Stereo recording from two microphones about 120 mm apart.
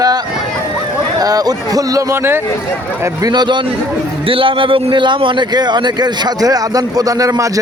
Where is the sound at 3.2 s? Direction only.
35° right (ahead or behind).